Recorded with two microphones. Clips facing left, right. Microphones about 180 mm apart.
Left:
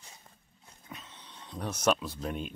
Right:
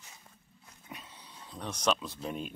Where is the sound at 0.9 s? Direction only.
10° right (ahead or behind).